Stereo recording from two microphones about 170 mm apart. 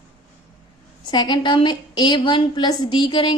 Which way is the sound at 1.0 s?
25° left (ahead or behind).